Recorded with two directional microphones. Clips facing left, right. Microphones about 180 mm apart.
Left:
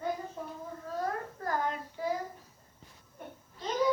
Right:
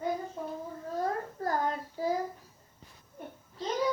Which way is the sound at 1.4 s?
35° right (ahead or behind).